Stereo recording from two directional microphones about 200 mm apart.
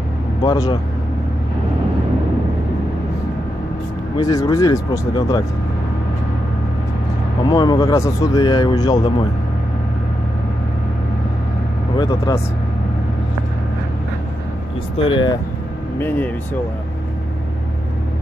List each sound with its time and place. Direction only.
0.4 s speech: 20° left (ahead or behind)
4.2 s speech: 15° left (ahead or behind)
7.4 s speech: 20° left (ahead or behind)
12.0 s speech: 20° left (ahead or behind)
15.0 s speech: 25° left (ahead or behind)
16.0 s speech: 10° left (ahead or behind)